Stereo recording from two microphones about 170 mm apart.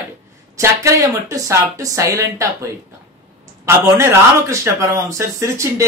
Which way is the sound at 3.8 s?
15° right (ahead or behind).